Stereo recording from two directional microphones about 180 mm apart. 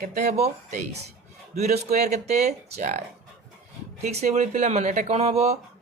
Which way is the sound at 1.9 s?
40° right (ahead or behind).